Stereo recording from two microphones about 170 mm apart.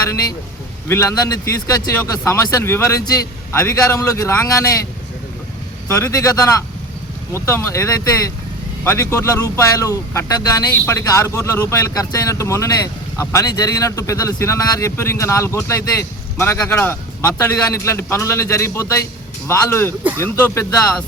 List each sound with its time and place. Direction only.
0.9 s speech: 15° left (ahead or behind)
6.0 s speech: 20° left (ahead or behind)